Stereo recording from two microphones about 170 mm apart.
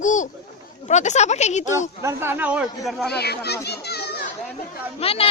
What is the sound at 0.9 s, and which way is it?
A child's voice, 45° left (ahead or behind).